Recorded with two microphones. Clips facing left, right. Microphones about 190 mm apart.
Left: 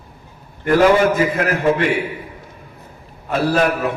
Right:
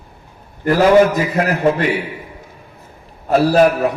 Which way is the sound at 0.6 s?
40° right (ahead or behind).